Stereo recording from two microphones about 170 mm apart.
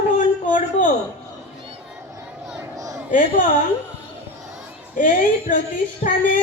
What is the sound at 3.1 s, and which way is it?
Speech, 50° left (ahead or behind).